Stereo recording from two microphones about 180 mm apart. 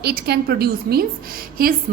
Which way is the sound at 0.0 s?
60° right (ahead or behind).